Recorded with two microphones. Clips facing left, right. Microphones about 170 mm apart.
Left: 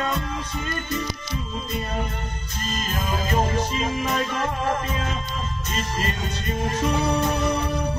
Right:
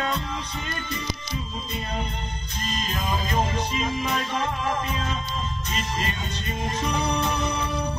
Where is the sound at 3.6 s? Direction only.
50° left (ahead or behind).